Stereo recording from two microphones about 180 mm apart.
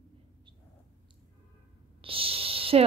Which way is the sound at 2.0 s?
30° right (ahead or behind).